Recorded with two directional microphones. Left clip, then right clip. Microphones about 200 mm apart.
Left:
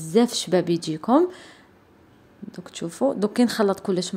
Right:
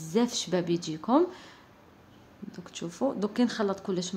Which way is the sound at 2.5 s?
25° left (ahead or behind).